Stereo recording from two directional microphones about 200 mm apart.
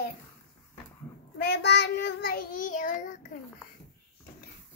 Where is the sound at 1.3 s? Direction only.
55° left (ahead or behind); by 3.2 s 40° left (ahead or behind).